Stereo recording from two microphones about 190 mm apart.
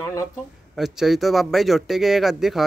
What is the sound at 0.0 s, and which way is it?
Speech, 15° left (ahead or behind).